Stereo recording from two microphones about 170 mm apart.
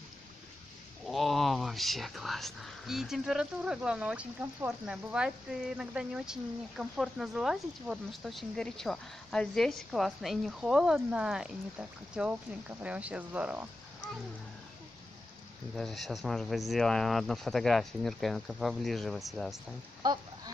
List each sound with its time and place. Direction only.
1.0 s speech: centre (ahead or behind)
15.7 s speech: centre (ahead or behind)
20.0 s a sound: 25° right (ahead or behind)